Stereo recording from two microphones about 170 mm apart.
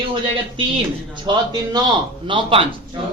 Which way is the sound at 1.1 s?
25° right (ahead or behind).